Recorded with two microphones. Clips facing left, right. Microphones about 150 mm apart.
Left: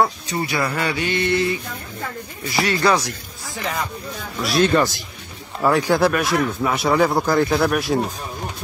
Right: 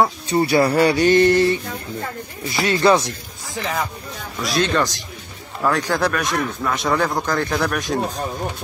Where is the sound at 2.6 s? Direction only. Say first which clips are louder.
Right 3 dB; 25° right (ahead or behind).